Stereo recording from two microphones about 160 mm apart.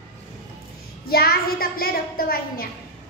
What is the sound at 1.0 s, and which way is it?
A woman's voice, 70° left (ahead or behind).